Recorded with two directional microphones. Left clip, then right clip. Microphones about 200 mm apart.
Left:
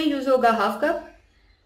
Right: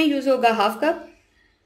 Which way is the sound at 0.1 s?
20° right (ahead or behind).